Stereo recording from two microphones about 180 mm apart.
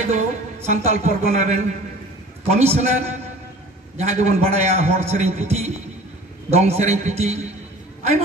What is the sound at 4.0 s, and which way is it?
A man's voice, 35° right (ahead or behind).